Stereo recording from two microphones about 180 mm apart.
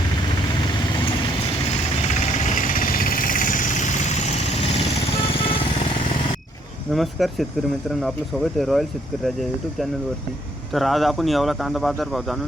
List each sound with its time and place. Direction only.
2.6 s vehicle: 50° left (ahead or behind)
6.9 s speech: centre (ahead or behind)
8.5 s speech: centre (ahead or behind)
10.8 s speech: centre (ahead or behind)